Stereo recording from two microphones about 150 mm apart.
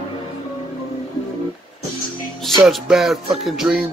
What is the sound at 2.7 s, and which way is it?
Music, centre (ahead or behind).